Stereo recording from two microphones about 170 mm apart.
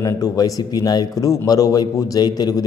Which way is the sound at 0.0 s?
20° left (ahead or behind).